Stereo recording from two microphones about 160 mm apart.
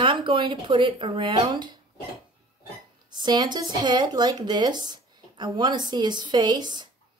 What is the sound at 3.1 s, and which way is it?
Speech, 25° right (ahead or behind).